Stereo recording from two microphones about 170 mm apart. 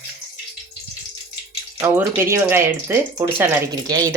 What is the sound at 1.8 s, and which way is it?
Speech, 15° right (ahead or behind).